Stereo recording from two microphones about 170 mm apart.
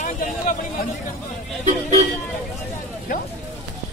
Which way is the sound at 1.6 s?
40° right (ahead or behind).